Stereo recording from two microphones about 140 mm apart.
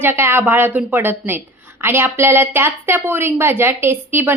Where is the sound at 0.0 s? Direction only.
15° right (ahead or behind).